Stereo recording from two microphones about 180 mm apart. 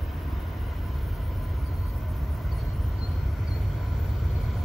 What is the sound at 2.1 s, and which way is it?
Vehicle, centre (ahead or behind).